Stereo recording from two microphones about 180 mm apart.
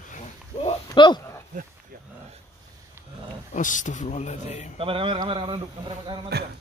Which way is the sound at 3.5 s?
45° left (ahead or behind).